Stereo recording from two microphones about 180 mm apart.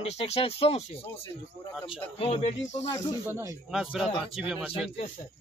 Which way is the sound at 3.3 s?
15° right (ahead or behind).